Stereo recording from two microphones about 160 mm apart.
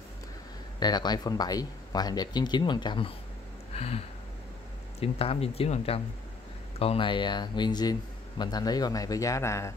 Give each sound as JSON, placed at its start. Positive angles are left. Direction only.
{"t": 0.7, "sound": "speech", "side_deg": 25}
{"t": 3.7, "sound": "a sound", "side_deg": 40}
{"t": 5.0, "sound": "speech", "side_deg": 35}